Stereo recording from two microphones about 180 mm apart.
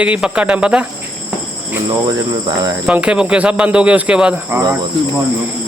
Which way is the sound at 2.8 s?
5° right (ahead or behind).